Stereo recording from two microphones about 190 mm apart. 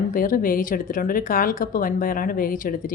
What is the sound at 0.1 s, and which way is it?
A woman's voice, 45° left (ahead or behind).